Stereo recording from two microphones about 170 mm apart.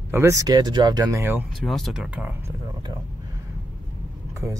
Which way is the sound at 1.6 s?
Centre (ahead or behind).